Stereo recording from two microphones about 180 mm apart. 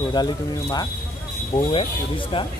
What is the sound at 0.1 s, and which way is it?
Speech, 20° left (ahead or behind).